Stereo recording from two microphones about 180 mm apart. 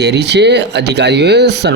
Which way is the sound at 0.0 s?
70° right (ahead or behind).